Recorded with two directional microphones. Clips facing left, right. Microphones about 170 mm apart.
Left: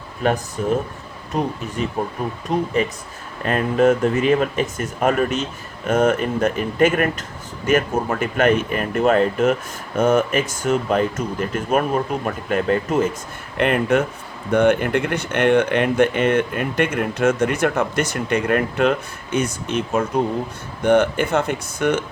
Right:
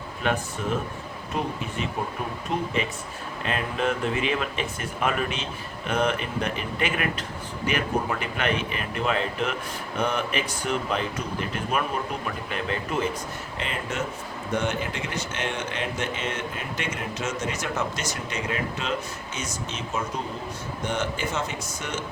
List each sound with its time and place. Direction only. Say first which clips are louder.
0.2 s speech: left 6 dB; 40° left (ahead or behind)
13.6 s speech: left 13 dB; 60° left (ahead or behind)